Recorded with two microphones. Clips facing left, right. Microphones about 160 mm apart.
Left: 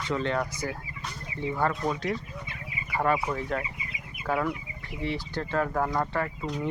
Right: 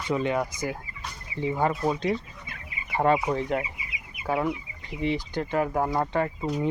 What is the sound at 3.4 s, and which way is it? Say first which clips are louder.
Speech: right 3 dB; 20° right (ahead or behind).